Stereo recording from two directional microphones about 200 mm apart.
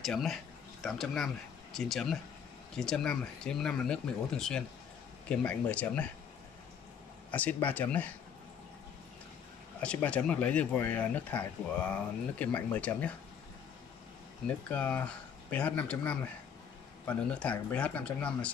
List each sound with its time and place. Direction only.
0.0 s speech: centre (ahead or behind)
7.2 s speech: 10° left (ahead or behind)
9.8 s speech: 5° left (ahead or behind)
14.7 s speech: 5° left (ahead or behind)